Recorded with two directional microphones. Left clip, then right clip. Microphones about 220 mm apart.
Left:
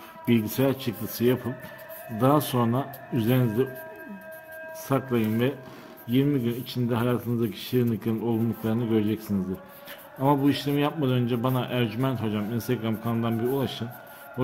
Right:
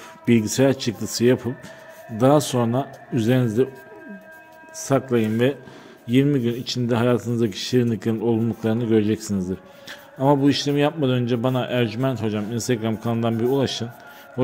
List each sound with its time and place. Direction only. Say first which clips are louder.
0.2 s speech: right 6 dB; 20° right (ahead or behind)
4.8 s a man's voice: right 6 dB; 20° right (ahead or behind)